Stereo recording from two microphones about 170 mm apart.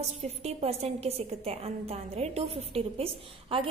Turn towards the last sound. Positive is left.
turn(degrees=-35)  # may be behind; listen again after turning